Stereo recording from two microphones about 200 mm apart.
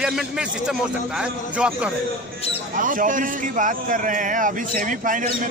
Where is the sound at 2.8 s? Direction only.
40° right (ahead or behind).